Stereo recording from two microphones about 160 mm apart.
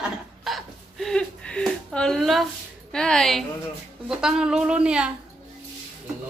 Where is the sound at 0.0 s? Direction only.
Centre (ahead or behind).